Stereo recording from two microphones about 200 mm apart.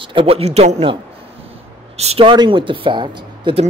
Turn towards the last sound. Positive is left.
turn(degrees=-25)  # may be behind; listen again after turning